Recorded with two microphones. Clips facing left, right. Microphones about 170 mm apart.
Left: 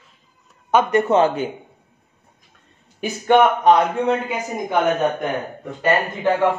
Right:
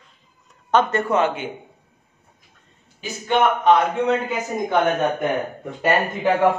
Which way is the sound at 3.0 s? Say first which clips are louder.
Left 5 dB; 55° left (ahead or behind).